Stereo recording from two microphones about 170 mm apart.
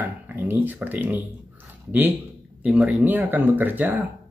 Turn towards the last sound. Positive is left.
turn(degrees=-10)  # may be behind; listen again after turning